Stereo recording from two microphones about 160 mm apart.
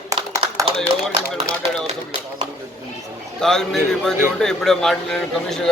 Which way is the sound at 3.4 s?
5° left (ahead or behind).